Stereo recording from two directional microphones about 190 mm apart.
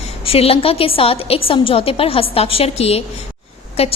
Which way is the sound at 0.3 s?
30° left (ahead or behind).